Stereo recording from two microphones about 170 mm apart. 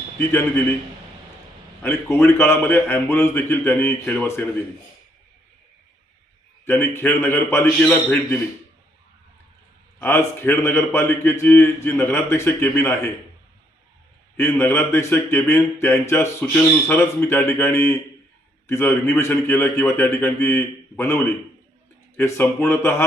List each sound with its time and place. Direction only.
0.2 s speech: 15° left (ahead or behind)
1.8 s speech: 15° left (ahead or behind)
6.7 s speech: 15° left (ahead or behind)
10.0 s speech: 15° left (ahead or behind)
14.3 s speech: 15° left (ahead or behind)